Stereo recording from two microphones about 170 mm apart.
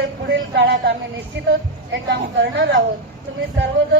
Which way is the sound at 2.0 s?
90° right.